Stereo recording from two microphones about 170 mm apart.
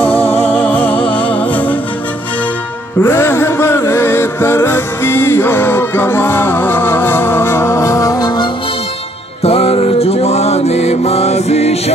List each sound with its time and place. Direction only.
0.3 s music: 10° left (ahead or behind)
3.0 s music: 15° left (ahead or behind)
9.4 s music: 35° left (ahead or behind)